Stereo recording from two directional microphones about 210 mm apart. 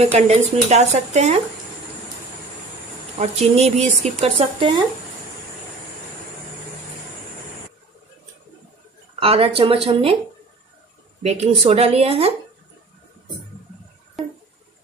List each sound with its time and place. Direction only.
0.0 s speech: 30° right (ahead or behind)
3.2 s speech: 30° right (ahead or behind)
9.2 s speech: 25° right (ahead or behind)
11.2 s speech: 30° right (ahead or behind)